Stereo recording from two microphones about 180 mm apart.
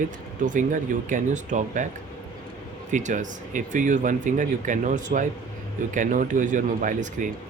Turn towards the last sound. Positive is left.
turn(degrees=-45)  # may be behind; listen again after turning